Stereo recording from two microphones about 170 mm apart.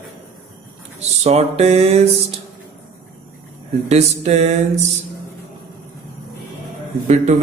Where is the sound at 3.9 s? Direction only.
40° right (ahead or behind).